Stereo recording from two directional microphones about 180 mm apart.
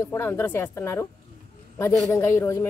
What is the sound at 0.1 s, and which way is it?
Speech, 15° left (ahead or behind).